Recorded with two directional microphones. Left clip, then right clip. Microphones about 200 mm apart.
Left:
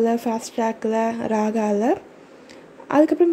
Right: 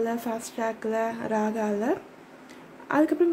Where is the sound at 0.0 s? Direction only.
20° left (ahead or behind).